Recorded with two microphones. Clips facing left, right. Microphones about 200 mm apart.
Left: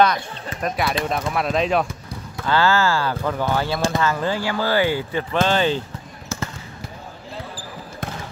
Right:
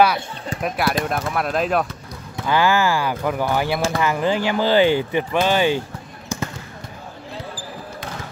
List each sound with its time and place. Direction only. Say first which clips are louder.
0.0 s speech: right 1 dB; 10° right (ahead or behind)
2.4 s speech: right 1 dB; 15° right (ahead or behind)